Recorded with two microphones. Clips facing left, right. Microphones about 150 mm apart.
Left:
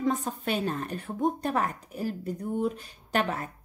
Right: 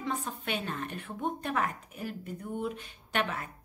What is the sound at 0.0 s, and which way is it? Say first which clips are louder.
Speech: left 7 dB; 40° left (ahead or behind).